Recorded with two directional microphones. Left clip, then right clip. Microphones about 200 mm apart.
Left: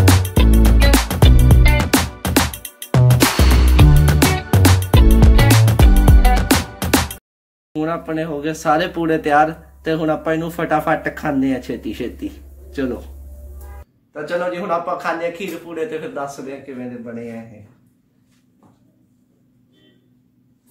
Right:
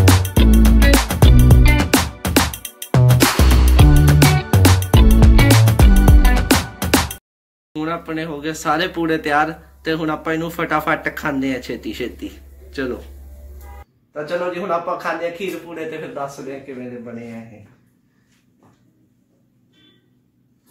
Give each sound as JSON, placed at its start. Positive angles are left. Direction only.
{"t": 0.0, "sound": "music", "side_deg": 0}
{"t": 7.7, "sound": "speech", "side_deg": 30}
{"t": 14.7, "sound": "a man's voice", "side_deg": 0}